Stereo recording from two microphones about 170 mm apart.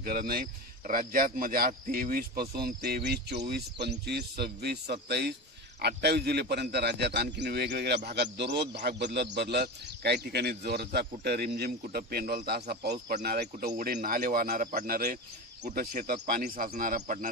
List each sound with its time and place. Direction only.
0.0 s a man's voice: 60° right (ahead or behind)
11.8 s speech: 50° right (ahead or behind)
12.1 s a man's voice: 65° right (ahead or behind)
13.7 s speech: 55° right (ahead or behind)